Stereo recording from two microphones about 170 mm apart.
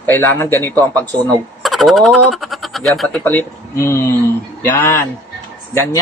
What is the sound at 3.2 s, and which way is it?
Speech, 15° left (ahead or behind).